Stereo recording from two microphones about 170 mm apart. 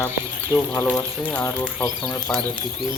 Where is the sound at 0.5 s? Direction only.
20° left (ahead or behind).